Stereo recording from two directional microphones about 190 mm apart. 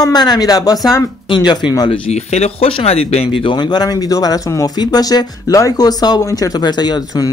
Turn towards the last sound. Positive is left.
turn(degrees=20)  # may be behind; listen again after turning